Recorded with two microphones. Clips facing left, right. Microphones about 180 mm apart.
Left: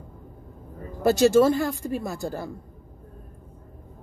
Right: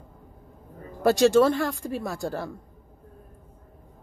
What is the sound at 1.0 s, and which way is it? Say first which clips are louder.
A woman's voice: left 1 dB; 5° left (ahead or behind).